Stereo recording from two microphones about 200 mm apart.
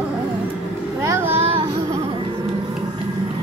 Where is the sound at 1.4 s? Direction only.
30° right (ahead or behind).